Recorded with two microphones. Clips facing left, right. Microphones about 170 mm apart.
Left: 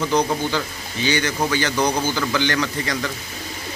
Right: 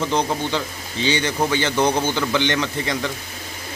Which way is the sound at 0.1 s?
25° right (ahead or behind).